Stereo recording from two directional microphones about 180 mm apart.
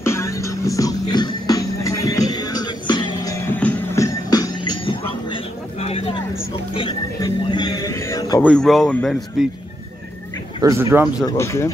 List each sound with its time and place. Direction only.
0.0 s music: 15° left (ahead or behind)
8.5 s speech: 5° left (ahead or behind)
10.6 s speech: 15° right (ahead or behind)
11.2 s speech: 15° left (ahead or behind)